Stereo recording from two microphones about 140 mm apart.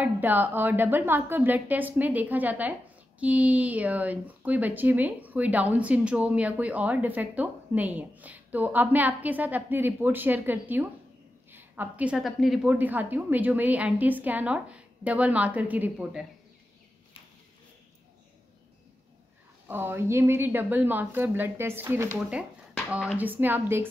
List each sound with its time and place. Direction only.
0.0 s a woman's voice: 10° right (ahead or behind)
12.6 s speech: 10° right (ahead or behind)
19.7 s speech: 15° right (ahead or behind)